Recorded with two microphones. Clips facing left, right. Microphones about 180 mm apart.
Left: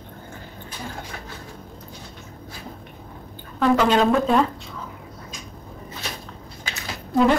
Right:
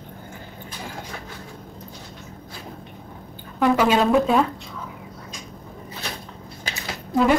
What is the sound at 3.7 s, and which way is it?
Speech, 5° right (ahead or behind).